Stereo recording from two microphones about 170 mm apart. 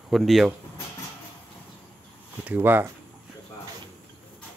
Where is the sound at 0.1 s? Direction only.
Centre (ahead or behind).